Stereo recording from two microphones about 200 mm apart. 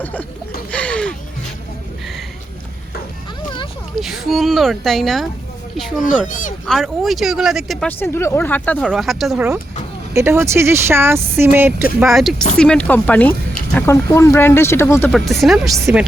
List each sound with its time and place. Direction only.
0.0 s speech: 10° left (ahead or behind)
0.7 s a sound: 5° left (ahead or behind)
4.0 s speech: centre (ahead or behind)
6.1 s speech: 40° left (ahead or behind)
6.7 s speech: centre (ahead or behind)
10.2 s speech: 15° right (ahead or behind)
12.1 s speech: centre (ahead or behind)
15.1 s speech: centre (ahead or behind)